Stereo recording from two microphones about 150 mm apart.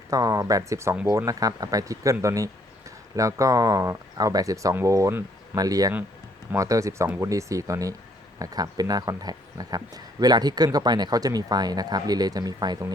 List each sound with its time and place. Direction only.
0.1 s speech: 20° right (ahead or behind)